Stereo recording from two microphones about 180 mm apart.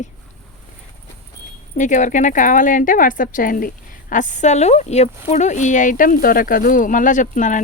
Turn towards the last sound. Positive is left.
turn(degrees=45)  # may be behind; listen again after turning